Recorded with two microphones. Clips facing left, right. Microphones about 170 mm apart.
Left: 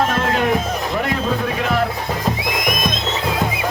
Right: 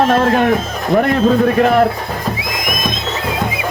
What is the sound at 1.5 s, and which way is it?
Speech, 50° right (ahead or behind).